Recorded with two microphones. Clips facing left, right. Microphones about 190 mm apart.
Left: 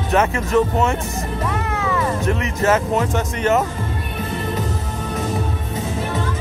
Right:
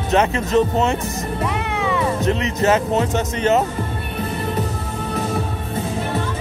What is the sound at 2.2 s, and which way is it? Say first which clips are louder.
Music: right 2 dB; 20° right (ahead or behind).